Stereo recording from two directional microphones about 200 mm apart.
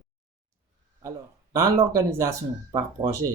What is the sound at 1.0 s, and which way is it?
Speech, 15° right (ahead or behind).